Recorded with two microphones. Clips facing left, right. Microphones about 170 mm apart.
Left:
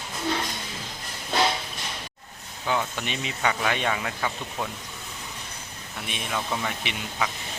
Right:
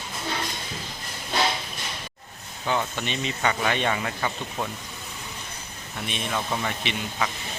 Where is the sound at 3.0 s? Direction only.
5° left (ahead or behind).